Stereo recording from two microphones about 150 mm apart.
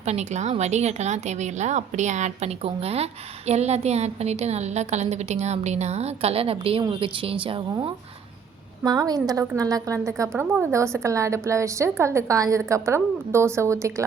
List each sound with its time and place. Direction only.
0.0 s a woman's voice: 50° right (ahead or behind); by 14.0 s 20° right (ahead or behind)